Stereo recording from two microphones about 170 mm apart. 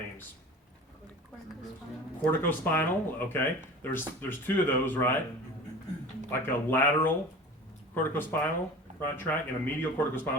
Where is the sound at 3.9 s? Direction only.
10° left (ahead or behind).